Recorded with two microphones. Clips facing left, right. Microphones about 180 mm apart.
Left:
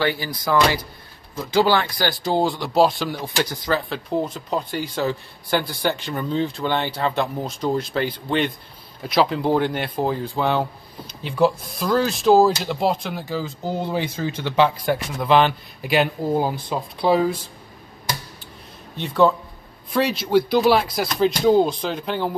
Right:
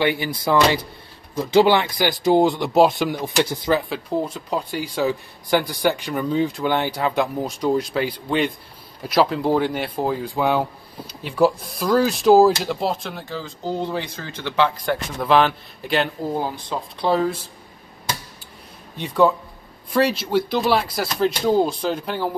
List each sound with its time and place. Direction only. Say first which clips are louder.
0.0 s speech: right 2 dB; 20° right (ahead or behind)
3.9 s speech: even; 5° right (ahead or behind); by 16.7 s 15° left (ahead or behind)
17.0 s speech: left 2 dB; centre (ahead or behind)
18.9 s speech: even; centre (ahead or behind)